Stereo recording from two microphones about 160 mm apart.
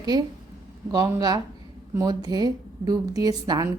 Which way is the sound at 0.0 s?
25° right (ahead or behind).